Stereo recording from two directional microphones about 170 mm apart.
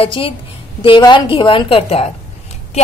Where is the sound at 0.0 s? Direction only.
30° left (ahead or behind).